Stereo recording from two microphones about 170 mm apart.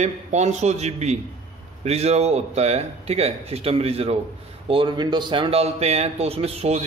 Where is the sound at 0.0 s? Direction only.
40° right (ahead or behind).